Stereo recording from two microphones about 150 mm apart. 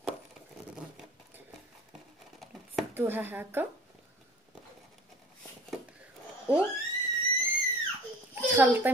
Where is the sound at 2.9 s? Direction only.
15° right (ahead or behind).